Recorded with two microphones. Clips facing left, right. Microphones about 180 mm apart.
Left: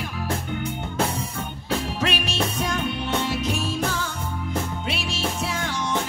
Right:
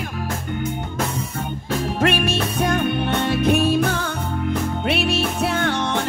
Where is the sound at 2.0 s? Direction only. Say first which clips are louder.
Right 5 dB; 55° right (ahead or behind).